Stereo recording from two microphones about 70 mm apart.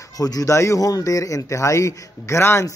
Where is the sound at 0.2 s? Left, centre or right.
Left.